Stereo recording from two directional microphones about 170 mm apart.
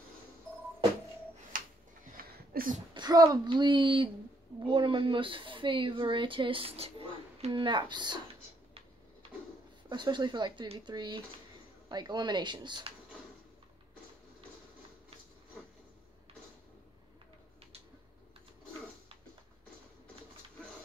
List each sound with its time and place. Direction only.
1.5 s a sound: 55° right (ahead or behind)
2.9 s speech: 25° right (ahead or behind)
9.8 s speech: 25° right (ahead or behind)